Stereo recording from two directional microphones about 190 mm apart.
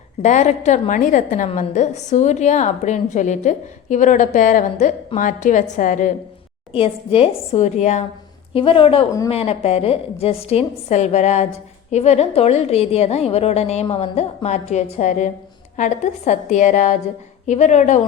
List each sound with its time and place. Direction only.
0.2 s a woman's voice: 40° left (ahead or behind)
6.7 s a woman's voice: 30° left (ahead or behind)